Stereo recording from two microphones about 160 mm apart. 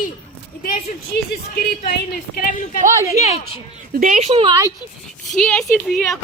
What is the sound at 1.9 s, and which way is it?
Speech, 60° left (ahead or behind).